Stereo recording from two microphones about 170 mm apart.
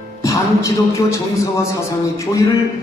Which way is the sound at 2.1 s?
20° left (ahead or behind).